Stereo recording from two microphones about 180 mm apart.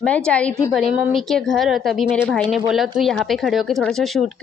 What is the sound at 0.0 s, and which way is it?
A woman's voice, 5° left (ahead or behind).